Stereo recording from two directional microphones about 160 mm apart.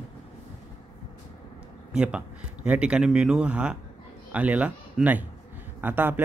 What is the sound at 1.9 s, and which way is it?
A man's voice, 5° right (ahead or behind).